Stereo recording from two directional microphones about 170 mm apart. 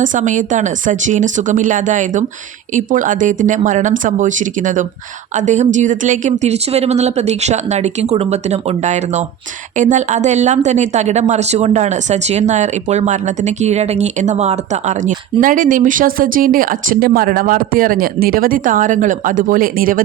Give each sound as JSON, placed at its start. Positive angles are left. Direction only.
{"t": 0.0, "sound": "a woman's voice", "side_deg": -50}